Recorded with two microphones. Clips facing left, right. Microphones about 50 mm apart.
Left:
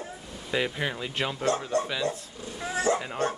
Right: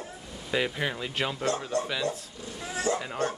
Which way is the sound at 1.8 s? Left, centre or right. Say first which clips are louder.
Left 1 dB; left.